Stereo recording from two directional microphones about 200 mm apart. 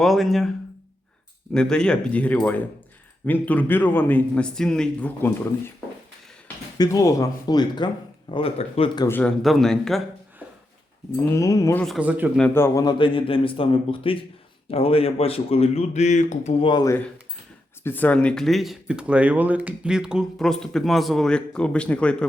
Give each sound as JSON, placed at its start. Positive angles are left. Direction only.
{"t": 0.0, "sound": "speech", "side_deg": 0}
{"t": 1.5, "sound": "a man's voice", "side_deg": 5}
{"t": 6.7, "sound": "speech", "side_deg": 15}
{"t": 9.0, "sound": "speech", "side_deg": 5}
{"t": 11.3, "sound": "a man's voice", "side_deg": 15}
{"t": 11.8, "sound": "speech", "side_deg": 0}
{"t": 12.4, "sound": "speech", "side_deg": 10}